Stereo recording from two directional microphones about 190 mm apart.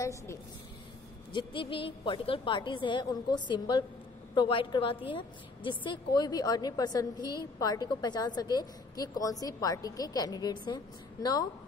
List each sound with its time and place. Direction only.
0.0 s a woman's voice: 15° left (ahead or behind)
1.3 s a woman's voice: 25° left (ahead or behind)